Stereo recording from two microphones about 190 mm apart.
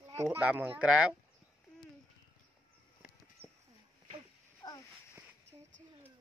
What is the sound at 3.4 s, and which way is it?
Bird, 10° left (ahead or behind).